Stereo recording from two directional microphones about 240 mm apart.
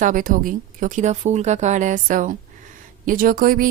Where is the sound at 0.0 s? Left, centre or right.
Right.